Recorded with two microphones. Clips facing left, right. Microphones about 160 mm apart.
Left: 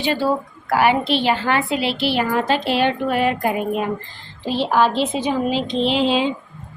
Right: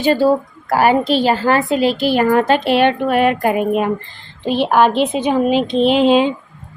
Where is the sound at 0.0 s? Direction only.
45° right (ahead or behind).